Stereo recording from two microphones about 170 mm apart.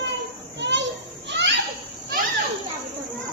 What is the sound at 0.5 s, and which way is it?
Children playing, 90° right.